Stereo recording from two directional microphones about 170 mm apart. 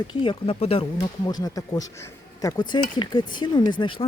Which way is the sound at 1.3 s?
20° left (ahead or behind).